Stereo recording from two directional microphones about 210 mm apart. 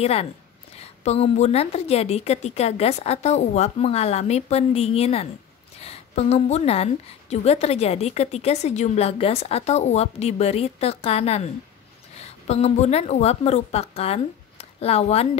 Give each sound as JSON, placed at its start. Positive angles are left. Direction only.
{"t": 0.0, "sound": "a woman's voice", "side_deg": 30}